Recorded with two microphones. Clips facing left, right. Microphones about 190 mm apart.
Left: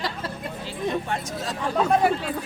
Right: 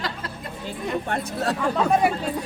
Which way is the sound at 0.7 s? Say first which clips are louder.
Even; 55° right (ahead or behind).